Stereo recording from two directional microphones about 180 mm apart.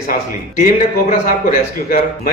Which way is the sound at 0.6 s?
50° left (ahead or behind).